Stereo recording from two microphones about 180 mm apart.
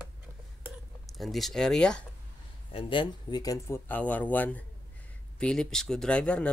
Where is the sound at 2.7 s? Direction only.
30° left (ahead or behind).